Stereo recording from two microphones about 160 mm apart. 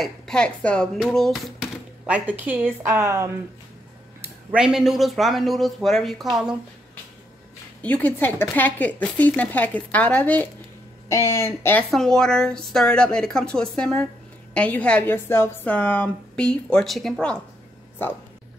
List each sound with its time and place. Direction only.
0.0 s speech: 5° left (ahead or behind); by 3.3 s 15° right (ahead or behind)
4.5 s speech: 5° right (ahead or behind)
7.8 s a woman's voice: 10° left (ahead or behind)
11.9 s a woman's voice: 5° left (ahead or behind)